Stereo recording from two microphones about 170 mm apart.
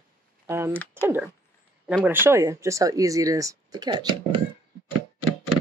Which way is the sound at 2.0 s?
10° right (ahead or behind).